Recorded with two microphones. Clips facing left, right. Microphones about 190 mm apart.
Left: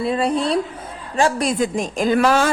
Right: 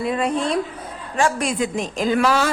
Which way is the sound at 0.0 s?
30° left (ahead or behind).